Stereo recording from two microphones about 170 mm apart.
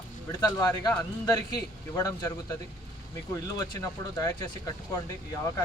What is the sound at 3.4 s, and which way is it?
Speech, 20° left (ahead or behind).